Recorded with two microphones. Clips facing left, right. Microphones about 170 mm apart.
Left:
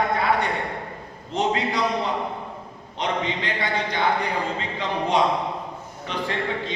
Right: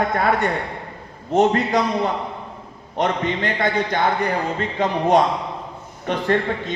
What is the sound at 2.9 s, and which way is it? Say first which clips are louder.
A man's voice: right 5 dB; 50° right (ahead or behind).